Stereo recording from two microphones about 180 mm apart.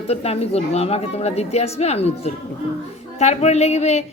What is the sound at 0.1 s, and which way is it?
Speech, 35° left (ahead or behind).